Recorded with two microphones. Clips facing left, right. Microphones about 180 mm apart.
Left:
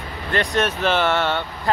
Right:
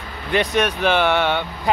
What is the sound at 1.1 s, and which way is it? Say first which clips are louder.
Speech: right 2 dB; 15° right (ahead or behind).